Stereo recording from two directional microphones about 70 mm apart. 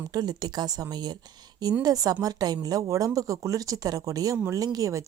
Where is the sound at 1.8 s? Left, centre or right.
Right.